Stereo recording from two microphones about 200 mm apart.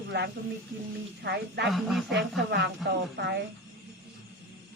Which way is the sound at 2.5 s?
60° right (ahead or behind).